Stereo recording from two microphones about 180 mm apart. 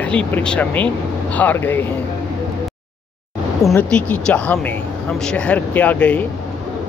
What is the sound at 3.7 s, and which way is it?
Speech, 5° left (ahead or behind).